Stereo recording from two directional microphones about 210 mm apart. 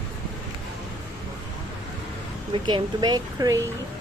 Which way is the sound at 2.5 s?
20° right (ahead or behind).